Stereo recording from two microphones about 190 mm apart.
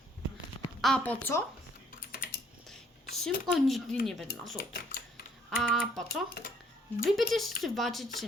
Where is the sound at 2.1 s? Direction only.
55° left (ahead or behind).